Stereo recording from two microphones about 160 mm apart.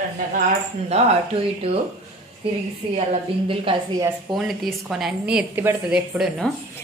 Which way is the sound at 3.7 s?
35° right (ahead or behind).